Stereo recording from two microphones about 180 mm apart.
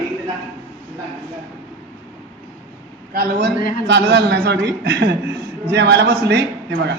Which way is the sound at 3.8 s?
70° right (ahead or behind).